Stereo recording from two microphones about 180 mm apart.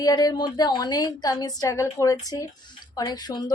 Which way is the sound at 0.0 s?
20° left (ahead or behind).